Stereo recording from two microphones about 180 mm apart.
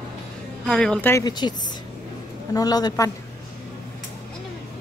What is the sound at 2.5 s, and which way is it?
Speech, 20° left (ahead or behind).